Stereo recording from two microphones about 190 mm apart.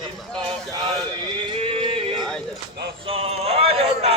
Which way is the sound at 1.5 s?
30° right (ahead or behind).